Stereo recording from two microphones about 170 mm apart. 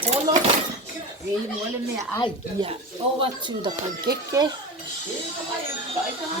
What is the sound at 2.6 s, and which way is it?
A child's voice, 25° right (ahead or behind).